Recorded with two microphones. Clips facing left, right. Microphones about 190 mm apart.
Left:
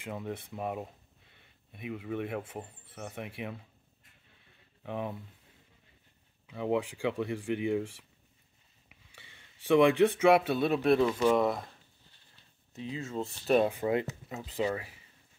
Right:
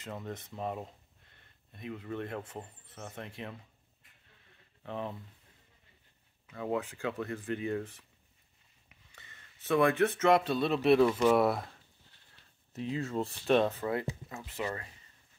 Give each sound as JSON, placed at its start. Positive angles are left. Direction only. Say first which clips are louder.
{"t": 0.0, "sound": "speech", "louder": "left 3 dB", "side_deg": 10}
{"t": 4.8, "sound": "speech", "louder": "left 2 dB", "side_deg": 15}
{"t": 6.4, "sound": "speech", "louder": "left 3 dB", "side_deg": 15}
{"t": 9.1, "sound": "speech", "louder": "even", "side_deg": 10}
{"t": 13.0, "sound": "speech", "louder": "right 2 dB", "side_deg": 0}
{"t": 14.7, "sound": "speech", "louder": "left 5 dB", "side_deg": 5}